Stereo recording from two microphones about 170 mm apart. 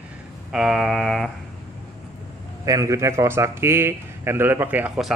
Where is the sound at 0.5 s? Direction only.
5° right (ahead or behind).